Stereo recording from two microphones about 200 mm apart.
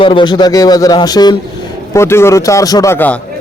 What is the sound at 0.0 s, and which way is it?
A man's voice, 25° left (ahead or behind).